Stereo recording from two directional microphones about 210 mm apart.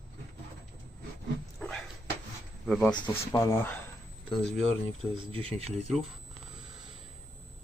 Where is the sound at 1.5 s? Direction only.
5° left (ahead or behind).